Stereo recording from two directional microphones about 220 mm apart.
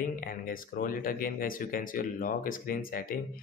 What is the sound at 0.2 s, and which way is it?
Speech, 40° left (ahead or behind).